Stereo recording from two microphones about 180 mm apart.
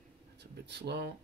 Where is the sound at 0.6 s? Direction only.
70° right (ahead or behind).